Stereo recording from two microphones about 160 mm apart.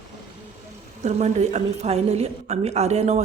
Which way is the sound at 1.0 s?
45° right (ahead or behind).